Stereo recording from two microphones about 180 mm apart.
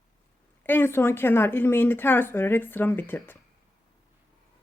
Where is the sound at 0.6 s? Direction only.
10° left (ahead or behind).